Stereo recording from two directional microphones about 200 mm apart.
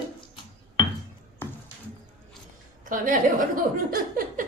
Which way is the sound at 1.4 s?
10° left (ahead or behind).